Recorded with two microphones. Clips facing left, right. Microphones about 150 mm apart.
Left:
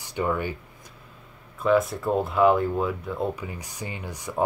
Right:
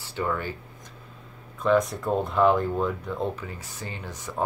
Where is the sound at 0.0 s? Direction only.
15° left (ahead or behind).